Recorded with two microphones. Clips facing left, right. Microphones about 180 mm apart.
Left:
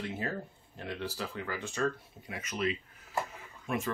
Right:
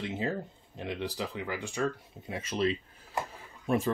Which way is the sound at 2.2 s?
30° right (ahead or behind).